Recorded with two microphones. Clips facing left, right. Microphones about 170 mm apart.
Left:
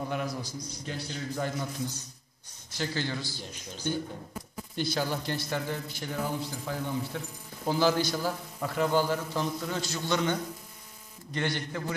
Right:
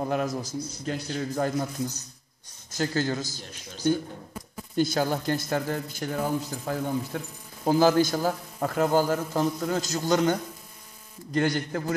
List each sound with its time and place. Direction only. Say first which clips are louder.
0.0 s a man's voice: right 5 dB; 45° right (ahead or behind)
4.7 s a man's voice: right 6 dB; 45° right (ahead or behind)
11.3 s a man's voice: right 7 dB; 40° right (ahead or behind)